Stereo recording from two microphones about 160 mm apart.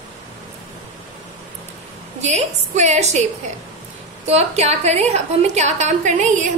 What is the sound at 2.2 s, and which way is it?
A woman's voice, 45° right (ahead or behind).